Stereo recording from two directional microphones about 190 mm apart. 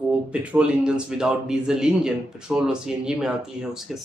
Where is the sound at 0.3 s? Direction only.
5° right (ahead or behind).